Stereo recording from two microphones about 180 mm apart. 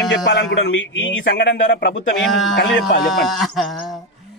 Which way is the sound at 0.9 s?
90° left.